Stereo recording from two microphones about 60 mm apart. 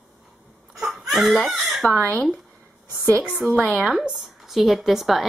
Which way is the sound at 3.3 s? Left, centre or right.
Centre.